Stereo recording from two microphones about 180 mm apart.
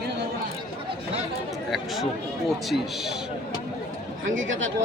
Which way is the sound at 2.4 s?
Centre (ahead or behind).